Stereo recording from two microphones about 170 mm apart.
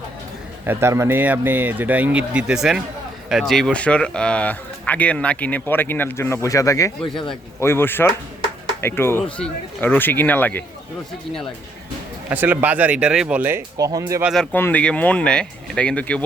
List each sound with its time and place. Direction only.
0.6 s speech: 15° right (ahead or behind); by 10.6 s 10° left (ahead or behind)
12.3 s speech: 10° right (ahead or behind)
14.3 s speech: 10° left (ahead or behind)